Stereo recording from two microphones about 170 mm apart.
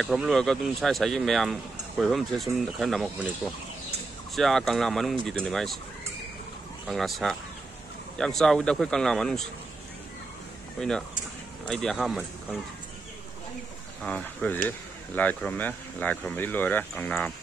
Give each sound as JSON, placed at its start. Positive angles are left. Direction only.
{"t": 0.0, "sound": "speech", "side_deg": 0}
{"t": 6.9, "sound": "speech", "side_deg": 0}
{"t": 10.8, "sound": "speech", "side_deg": 5}
{"t": 14.0, "sound": "speech", "side_deg": 10}